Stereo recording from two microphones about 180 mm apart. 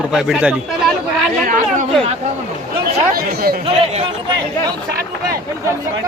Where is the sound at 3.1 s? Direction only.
55° right (ahead or behind).